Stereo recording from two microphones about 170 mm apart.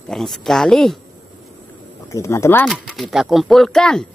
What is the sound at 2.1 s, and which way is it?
Speech, 15° left (ahead or behind).